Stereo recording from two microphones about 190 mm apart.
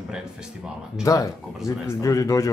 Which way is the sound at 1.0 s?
15° left (ahead or behind).